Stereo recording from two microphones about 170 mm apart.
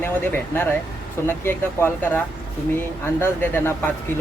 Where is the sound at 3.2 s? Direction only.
10° left (ahead or behind).